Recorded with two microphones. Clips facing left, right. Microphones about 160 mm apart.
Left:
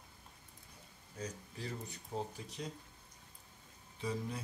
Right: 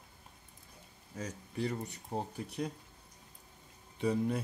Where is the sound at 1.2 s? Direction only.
80° right; by 2.7 s 60° right (ahead or behind).